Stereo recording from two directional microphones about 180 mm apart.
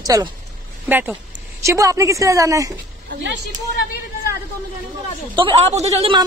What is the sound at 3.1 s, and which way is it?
Speech, 90° right.